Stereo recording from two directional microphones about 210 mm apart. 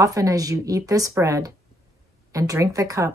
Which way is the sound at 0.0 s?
15° right (ahead or behind).